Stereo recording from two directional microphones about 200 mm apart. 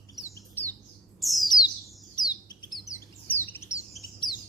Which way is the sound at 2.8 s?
15° left (ahead or behind).